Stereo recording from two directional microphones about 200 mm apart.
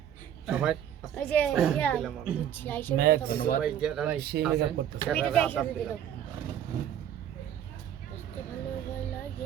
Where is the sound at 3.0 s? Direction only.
50° right (ahead or behind).